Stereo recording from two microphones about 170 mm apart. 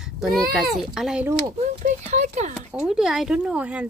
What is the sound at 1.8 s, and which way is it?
Speech, 45° right (ahead or behind).